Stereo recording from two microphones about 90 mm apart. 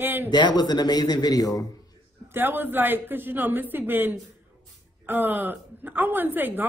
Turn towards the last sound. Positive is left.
turn(degrees=-20)  # may be behind; listen again after turning